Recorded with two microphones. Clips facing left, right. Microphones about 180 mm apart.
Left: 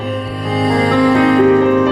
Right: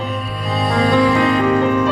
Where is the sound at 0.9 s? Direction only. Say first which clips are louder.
Left 3 dB; 55° left (ahead or behind).